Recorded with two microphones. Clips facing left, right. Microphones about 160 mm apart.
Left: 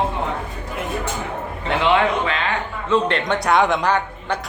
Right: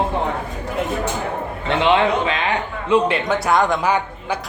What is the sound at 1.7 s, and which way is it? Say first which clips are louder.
A man's voice: right 1 dB; 25° right (ahead or behind).